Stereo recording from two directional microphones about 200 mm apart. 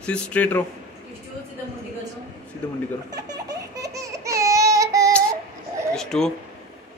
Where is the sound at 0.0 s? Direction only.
5° left (ahead or behind).